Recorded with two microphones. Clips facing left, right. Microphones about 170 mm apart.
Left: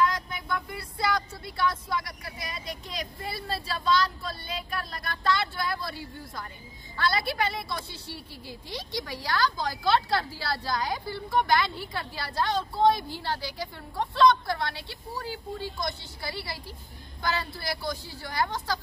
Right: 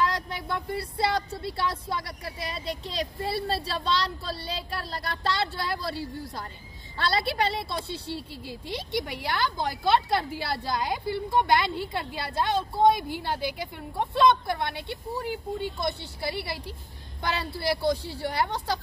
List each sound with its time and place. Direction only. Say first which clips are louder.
0.0 s a woman's voice: left 1 dB; 30° right (ahead or behind)
17.2 s a woman's voice: right 2 dB; 25° right (ahead or behind)